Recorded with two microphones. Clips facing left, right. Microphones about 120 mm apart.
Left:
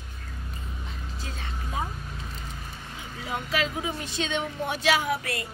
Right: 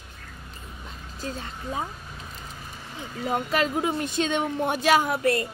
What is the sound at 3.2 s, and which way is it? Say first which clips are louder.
Speech: right 4 dB; 45° right (ahead or behind).